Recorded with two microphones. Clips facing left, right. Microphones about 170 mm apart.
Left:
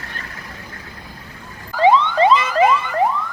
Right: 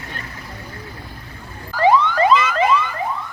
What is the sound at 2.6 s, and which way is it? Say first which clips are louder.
Emergency vehicle: left 1 dB; 50° left (ahead or behind).